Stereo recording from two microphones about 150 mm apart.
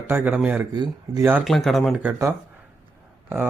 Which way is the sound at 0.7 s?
25° right (ahead or behind).